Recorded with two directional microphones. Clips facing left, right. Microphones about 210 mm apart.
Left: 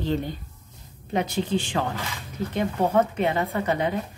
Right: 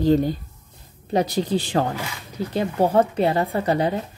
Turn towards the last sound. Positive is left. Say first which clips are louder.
# right 3 dB
turn(degrees=-35)  # may be behind; listen again after turning